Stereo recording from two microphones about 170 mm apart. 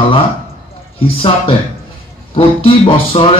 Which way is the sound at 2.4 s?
30° left (ahead or behind).